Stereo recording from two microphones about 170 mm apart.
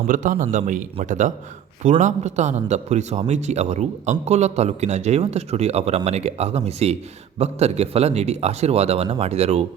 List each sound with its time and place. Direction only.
0.1 s a man's voice: 50° right (ahead or behind)